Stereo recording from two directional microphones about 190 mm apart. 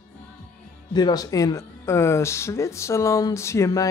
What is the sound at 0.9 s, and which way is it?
Speech, 20° left (ahead or behind).